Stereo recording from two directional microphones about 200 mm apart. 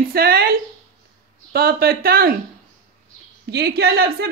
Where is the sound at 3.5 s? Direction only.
55° right (ahead or behind).